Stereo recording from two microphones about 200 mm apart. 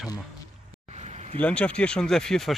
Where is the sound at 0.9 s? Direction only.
35° right (ahead or behind).